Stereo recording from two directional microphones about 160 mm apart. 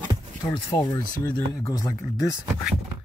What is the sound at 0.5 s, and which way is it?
Speech, 25° left (ahead or behind).